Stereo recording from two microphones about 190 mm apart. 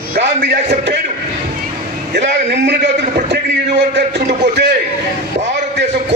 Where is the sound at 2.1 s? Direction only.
65° right (ahead or behind).